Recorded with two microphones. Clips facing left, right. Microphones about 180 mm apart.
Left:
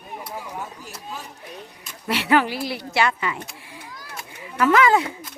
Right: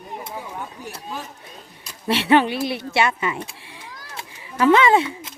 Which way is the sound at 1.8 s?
25° right (ahead or behind).